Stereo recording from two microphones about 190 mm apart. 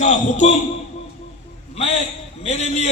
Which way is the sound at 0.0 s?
40° left (ahead or behind).